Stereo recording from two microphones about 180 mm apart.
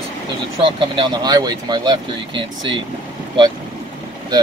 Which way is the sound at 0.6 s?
30° right (ahead or behind).